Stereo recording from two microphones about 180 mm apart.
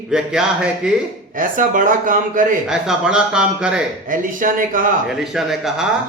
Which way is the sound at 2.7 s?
5° right (ahead or behind).